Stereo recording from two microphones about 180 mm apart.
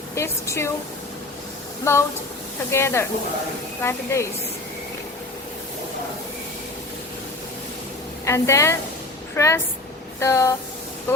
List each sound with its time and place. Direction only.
0.1 s speech: 15° left (ahead or behind)
1.8 s speech: 15° left (ahead or behind)
8.2 s speech: 15° left (ahead or behind)